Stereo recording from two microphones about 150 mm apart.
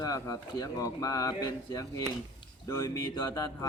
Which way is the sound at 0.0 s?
25° left (ahead or behind).